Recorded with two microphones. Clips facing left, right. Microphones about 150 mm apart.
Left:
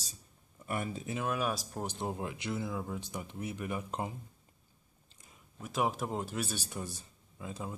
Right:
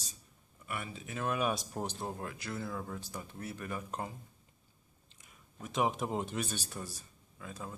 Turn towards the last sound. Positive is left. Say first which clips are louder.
# left 3 dB
turn(degrees=20)  # may be behind; listen again after turning